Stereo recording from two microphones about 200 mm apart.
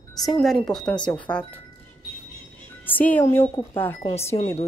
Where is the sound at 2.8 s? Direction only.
10° left (ahead or behind).